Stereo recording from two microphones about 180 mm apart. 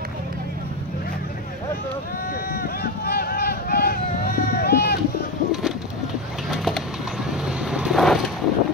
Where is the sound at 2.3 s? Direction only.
55° left (ahead or behind).